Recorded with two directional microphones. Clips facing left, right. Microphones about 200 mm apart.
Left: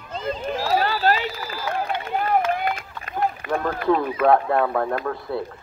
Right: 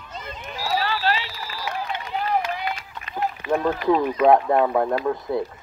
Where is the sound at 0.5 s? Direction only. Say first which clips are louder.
Left 1 dB; 50° left (ahead or behind).